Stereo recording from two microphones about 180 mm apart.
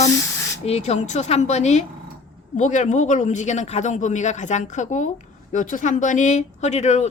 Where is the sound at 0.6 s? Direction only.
35° left (ahead or behind).